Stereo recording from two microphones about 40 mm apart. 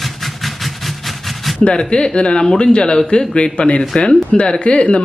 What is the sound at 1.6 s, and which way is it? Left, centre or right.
Speech, left.